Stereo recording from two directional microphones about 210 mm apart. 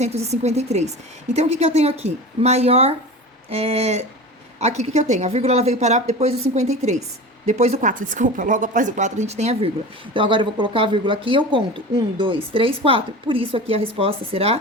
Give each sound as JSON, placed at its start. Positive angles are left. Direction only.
{"t": 0.0, "sound": "a woman's voice", "side_deg": -30}